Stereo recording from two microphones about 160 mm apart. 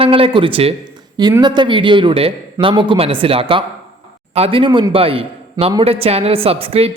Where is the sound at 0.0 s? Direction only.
35° right (ahead or behind).